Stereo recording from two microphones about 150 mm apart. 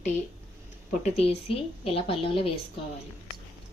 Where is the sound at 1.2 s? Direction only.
40° left (ahead or behind).